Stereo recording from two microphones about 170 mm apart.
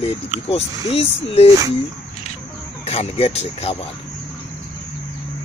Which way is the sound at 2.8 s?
35° left (ahead or behind).